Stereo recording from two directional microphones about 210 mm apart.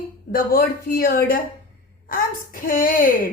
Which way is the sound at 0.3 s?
40° left (ahead or behind).